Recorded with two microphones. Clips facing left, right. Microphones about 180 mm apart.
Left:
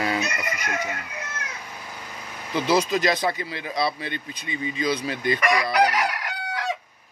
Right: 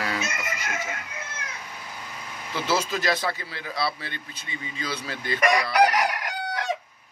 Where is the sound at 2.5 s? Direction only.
15° left (ahead or behind).